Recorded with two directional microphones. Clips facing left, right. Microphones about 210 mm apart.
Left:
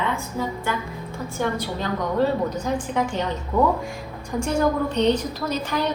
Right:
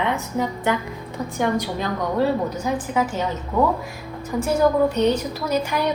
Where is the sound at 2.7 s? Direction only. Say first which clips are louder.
Right 1 dB; 5° right (ahead or behind).